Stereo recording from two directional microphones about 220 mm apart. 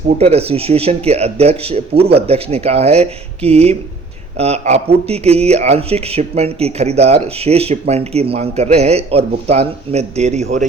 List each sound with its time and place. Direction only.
0.2 s speech: 25° right (ahead or behind)